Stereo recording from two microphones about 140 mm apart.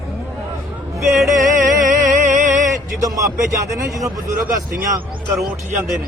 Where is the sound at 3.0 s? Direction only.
25° right (ahead or behind).